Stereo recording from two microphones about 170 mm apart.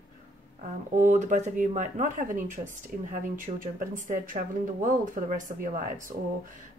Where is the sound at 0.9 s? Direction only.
45° right (ahead or behind).